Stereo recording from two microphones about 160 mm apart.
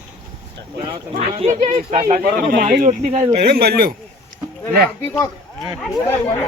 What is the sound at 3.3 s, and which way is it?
Speech, 80° right.